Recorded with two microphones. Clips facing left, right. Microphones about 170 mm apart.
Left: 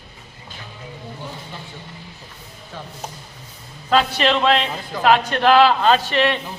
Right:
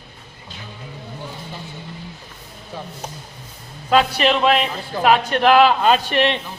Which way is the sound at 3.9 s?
10° right (ahead or behind).